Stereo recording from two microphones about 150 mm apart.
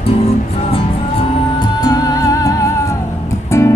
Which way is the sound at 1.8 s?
25° left (ahead or behind).